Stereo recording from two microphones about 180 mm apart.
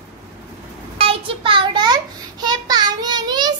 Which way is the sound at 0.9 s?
30° right (ahead or behind).